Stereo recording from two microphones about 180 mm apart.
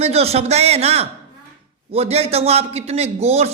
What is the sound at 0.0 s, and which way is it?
A man's voice, 35° right (ahead or behind).